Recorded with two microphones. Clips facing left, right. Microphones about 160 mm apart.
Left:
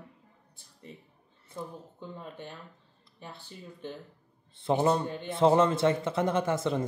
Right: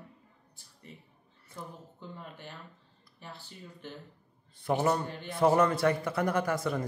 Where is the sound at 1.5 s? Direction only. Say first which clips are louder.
Left 4 dB; 20° left (ahead or behind).